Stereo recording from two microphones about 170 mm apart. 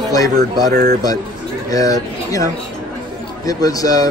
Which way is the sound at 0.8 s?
20° left (ahead or behind).